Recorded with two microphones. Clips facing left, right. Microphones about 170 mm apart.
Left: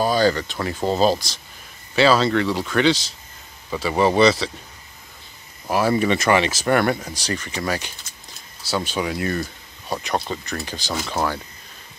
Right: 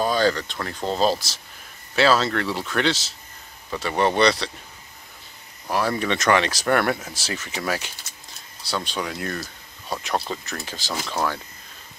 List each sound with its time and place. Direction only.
0.0 s speech: 5° left (ahead or behind)
5.7 s speech: 5° left (ahead or behind)